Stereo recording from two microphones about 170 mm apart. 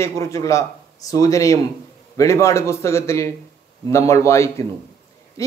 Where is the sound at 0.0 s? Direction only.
20° left (ahead or behind).